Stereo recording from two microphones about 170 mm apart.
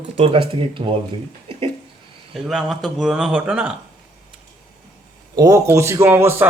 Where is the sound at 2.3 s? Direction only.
Centre (ahead or behind).